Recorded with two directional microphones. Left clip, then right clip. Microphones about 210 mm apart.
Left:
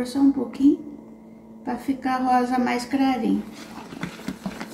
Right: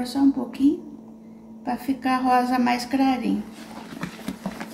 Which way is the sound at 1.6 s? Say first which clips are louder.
Right 1 dB; 35° right (ahead or behind).